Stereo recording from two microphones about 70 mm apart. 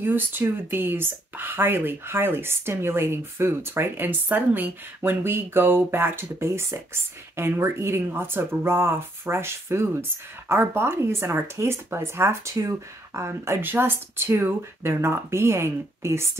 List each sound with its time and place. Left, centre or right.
0.0 s speech: right